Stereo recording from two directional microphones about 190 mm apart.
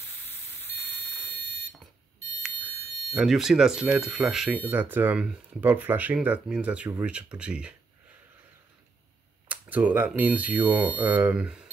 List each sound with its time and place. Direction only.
1.3 s alarm clock: 65° right (ahead or behind)
3.1 s speech: centre (ahead or behind)
9.5 s speech: 10° right (ahead or behind)